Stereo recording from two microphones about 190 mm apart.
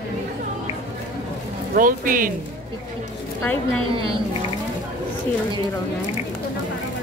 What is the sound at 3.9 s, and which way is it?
Speech, 25° right (ahead or behind).